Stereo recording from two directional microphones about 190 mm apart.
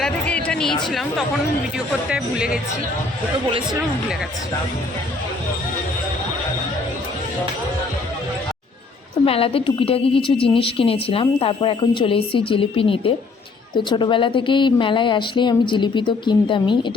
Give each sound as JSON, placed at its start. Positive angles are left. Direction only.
{"t": 0.0, "sound": "a sound", "side_deg": 5}
{"t": 2.0, "sound": "speech", "side_deg": -5}
{"t": 9.2, "sound": "a woman's voice", "side_deg": 30}